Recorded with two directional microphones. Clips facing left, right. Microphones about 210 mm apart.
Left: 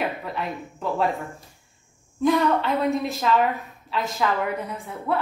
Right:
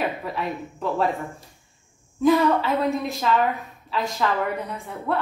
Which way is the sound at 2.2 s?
Centre (ahead or behind).